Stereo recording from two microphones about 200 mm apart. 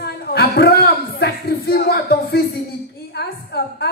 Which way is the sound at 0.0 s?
50° left (ahead or behind).